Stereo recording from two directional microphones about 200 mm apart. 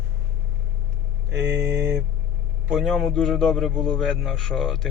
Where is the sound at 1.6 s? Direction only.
10° right (ahead or behind).